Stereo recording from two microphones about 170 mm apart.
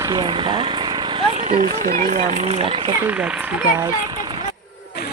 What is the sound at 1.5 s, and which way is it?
Speech, 55° right (ahead or behind).